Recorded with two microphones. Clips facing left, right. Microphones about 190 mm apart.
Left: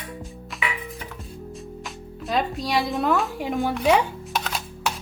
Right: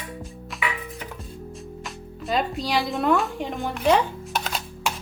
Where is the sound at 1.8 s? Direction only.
Centre (ahead or behind).